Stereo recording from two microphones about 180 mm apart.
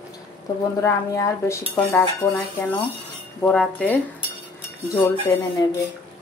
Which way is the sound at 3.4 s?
5° left (ahead or behind).